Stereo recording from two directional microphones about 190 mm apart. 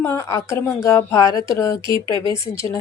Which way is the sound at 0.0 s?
15° left (ahead or behind).